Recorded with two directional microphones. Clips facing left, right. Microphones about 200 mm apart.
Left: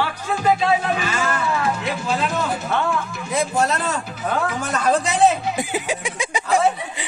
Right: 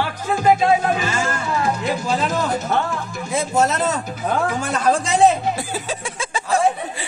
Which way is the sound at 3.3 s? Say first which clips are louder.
Right 2 dB; 25° right (ahead or behind).